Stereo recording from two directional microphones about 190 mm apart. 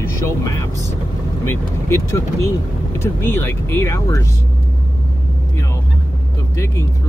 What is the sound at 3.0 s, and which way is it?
Speech, 15° left (ahead or behind).